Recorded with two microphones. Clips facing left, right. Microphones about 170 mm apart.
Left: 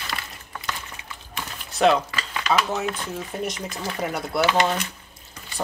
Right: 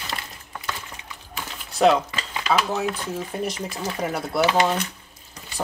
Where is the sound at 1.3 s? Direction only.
Centre (ahead or behind).